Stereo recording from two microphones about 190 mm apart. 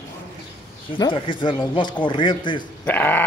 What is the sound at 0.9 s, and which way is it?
Speech, 25° left (ahead or behind).